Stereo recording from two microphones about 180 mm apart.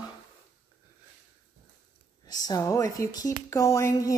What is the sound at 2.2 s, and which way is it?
Speech, 20° left (ahead or behind).